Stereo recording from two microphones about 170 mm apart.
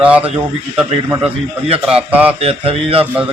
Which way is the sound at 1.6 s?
35° right (ahead or behind).